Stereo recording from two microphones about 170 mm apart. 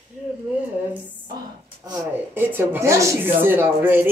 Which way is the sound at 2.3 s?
10° right (ahead or behind).